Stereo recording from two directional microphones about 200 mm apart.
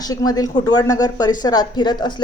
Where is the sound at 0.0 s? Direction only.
20° left (ahead or behind).